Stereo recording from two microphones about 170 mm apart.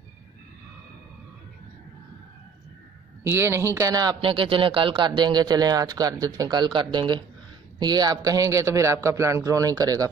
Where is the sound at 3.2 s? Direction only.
15° right (ahead or behind).